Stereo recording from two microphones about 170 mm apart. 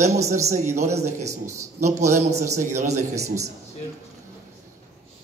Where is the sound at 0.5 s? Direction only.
45° right (ahead or behind).